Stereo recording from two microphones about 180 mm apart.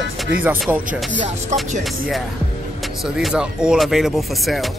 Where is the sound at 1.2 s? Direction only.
40° right (ahead or behind).